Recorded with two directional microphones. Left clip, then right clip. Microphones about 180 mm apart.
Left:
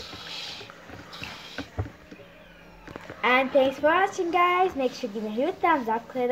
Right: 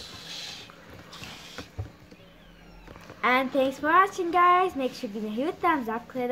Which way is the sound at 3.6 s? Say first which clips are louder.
Left 1 dB; 35° right (ahead or behind).